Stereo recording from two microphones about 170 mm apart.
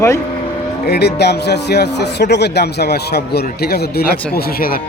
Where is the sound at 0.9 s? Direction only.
75° left (ahead or behind).